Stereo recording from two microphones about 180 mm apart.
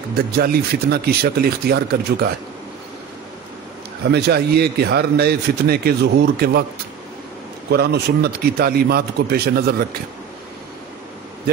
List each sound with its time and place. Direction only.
0.4 s speech: 60° right (ahead or behind)
4.1 s speech: 65° right (ahead or behind)
7.7 s speech: 65° right (ahead or behind)